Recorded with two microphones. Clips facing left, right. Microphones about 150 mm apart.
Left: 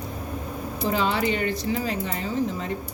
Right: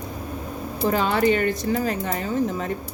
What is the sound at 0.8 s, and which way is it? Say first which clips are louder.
Speech: right 4 dB; 50° right (ahead or behind).